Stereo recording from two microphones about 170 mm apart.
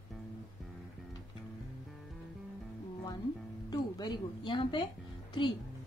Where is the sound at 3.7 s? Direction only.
25° left (ahead or behind).